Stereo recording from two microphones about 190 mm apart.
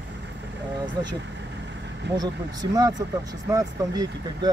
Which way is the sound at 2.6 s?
20° right (ahead or behind).